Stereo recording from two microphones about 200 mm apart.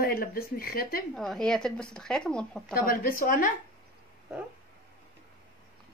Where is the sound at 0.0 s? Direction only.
45° left (ahead or behind).